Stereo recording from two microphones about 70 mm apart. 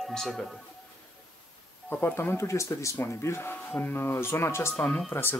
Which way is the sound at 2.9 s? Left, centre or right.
Left.